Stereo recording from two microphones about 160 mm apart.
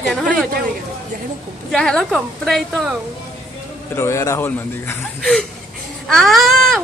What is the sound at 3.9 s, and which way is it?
A woman's voice, 20° left (ahead or behind).